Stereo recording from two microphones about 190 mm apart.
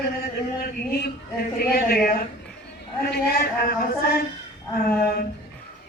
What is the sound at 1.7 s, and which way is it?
Speech, 50° left (ahead or behind).